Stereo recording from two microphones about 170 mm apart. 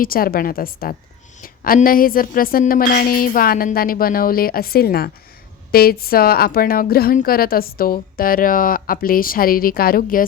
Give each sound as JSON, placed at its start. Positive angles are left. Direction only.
{"t": 0.0, "sound": "a woman's voice", "side_deg": 60}